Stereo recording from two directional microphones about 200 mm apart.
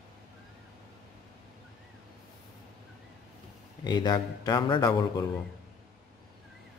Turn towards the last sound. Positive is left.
turn(degrees=20)  # may be behind; listen again after turning